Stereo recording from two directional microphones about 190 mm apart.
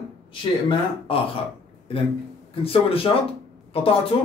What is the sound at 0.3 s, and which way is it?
Speech, 25° left (ahead or behind).